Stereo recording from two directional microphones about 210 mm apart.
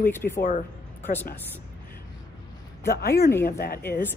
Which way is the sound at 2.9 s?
50° left (ahead or behind).